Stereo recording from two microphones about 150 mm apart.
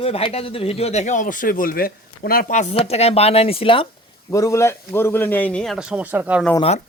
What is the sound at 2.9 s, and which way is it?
Speech, 45° left (ahead or behind).